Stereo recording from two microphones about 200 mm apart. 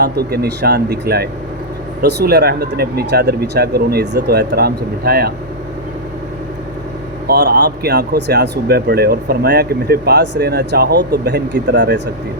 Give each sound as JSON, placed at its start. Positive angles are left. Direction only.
{"t": 0.0, "sound": "speech", "side_deg": -55}
{"t": 7.3, "sound": "speech", "side_deg": -55}